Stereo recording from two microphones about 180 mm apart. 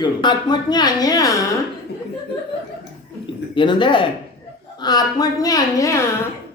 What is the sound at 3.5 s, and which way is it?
A man's voice, 25° left (ahead or behind).